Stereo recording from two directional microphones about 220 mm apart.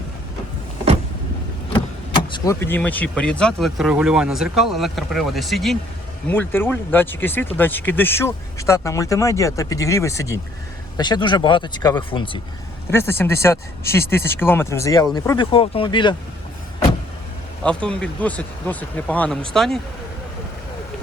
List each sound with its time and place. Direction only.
1.7 s speech: 20° left (ahead or behind)
12.9 s speech: 10° left (ahead or behind)
17.8 s speech: 5° left (ahead or behind)